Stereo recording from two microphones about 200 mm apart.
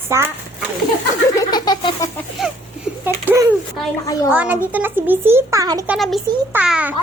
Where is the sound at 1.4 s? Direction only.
20° left (ahead or behind).